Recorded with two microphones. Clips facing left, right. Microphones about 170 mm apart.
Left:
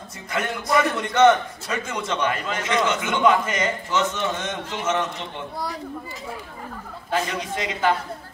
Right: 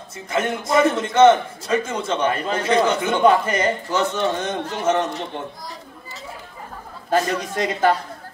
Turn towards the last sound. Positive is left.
turn(degrees=-40)  # may be behind; listen again after turning